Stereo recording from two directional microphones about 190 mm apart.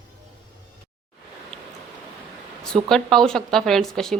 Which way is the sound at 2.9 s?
Centre (ahead or behind).